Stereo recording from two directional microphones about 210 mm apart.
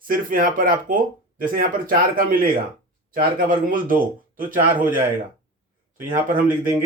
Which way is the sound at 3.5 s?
40° right (ahead or behind).